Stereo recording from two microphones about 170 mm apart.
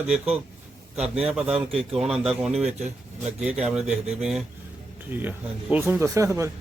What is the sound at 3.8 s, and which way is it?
Speech, 40° right (ahead or behind).